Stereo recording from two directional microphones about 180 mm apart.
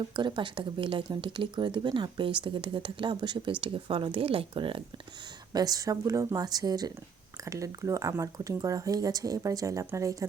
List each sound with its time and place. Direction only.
0.2 s speech: 25° right (ahead or behind)